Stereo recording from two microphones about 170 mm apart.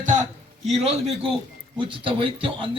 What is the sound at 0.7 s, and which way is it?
A man's voice, 35° right (ahead or behind).